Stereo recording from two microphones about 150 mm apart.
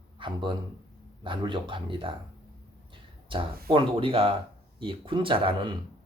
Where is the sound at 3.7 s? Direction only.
35° right (ahead or behind).